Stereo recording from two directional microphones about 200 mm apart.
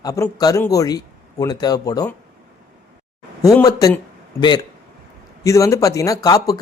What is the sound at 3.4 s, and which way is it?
Speech, 15° left (ahead or behind).